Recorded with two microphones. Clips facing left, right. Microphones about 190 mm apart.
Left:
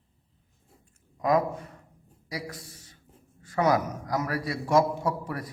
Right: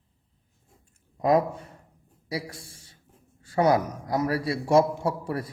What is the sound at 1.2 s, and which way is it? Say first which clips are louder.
A man's voice: right 2 dB; 30° right (ahead or behind).